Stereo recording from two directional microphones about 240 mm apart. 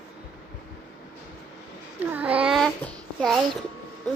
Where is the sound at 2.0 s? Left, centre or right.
Centre.